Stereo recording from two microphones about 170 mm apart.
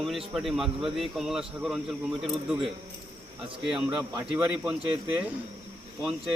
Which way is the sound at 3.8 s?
20° right (ahead or behind).